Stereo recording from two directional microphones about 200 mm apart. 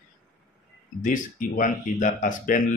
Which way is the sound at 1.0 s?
40° left (ahead or behind).